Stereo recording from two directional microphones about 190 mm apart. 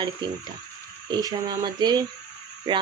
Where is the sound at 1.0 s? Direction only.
20° right (ahead or behind).